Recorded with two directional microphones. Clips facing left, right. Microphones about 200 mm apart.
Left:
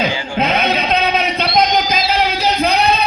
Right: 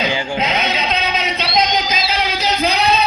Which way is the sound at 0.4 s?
55° left (ahead or behind).